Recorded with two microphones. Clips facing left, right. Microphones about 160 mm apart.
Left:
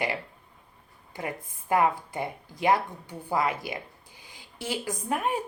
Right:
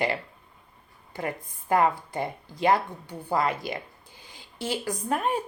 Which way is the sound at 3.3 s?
15° left (ahead or behind).